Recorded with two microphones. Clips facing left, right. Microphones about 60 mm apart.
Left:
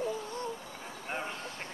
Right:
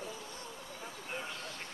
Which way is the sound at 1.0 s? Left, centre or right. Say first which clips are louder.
Left 5 dB; left.